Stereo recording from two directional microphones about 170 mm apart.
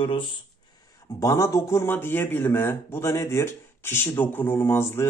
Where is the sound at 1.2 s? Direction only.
20° left (ahead or behind).